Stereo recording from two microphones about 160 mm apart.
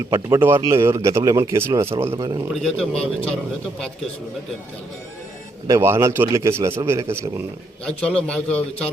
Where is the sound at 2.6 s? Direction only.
Centre (ahead or behind).